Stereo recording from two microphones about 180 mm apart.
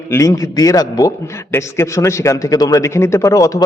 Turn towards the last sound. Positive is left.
turn(degrees=20)  # may be behind; listen again after turning